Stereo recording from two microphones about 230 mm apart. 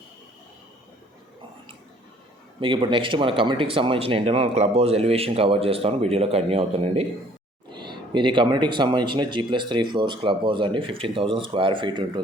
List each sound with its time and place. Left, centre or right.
2.6 s speech: right